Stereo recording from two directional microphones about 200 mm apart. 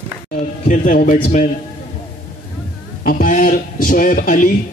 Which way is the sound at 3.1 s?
45° left (ahead or behind).